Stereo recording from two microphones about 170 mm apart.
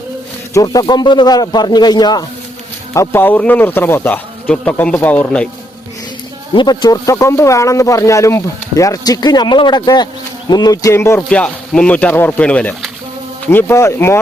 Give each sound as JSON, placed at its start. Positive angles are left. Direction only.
{"t": 0.5, "sound": "a man's voice", "side_deg": 20}
{"t": 6.5, "sound": "a man's voice", "side_deg": 25}